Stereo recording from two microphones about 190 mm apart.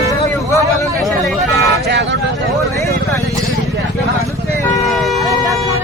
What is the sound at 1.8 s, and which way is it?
Vehicle, 70° right (ahead or behind).